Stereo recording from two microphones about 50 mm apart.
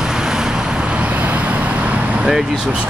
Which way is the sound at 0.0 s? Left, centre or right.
Centre.